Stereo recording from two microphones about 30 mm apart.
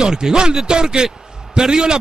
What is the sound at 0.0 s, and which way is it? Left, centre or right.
A man's voice, centre.